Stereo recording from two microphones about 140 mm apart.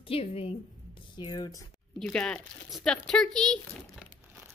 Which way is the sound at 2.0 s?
5° left (ahead or behind).